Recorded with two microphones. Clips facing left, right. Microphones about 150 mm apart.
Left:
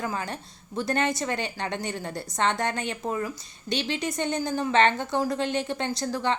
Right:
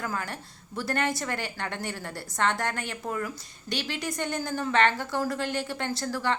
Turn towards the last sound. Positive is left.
turn(degrees=20)  # may be behind; listen again after turning